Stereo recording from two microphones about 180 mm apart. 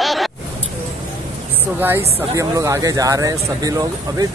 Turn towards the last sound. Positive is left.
turn(degrees=-20)  # may be behind; listen again after turning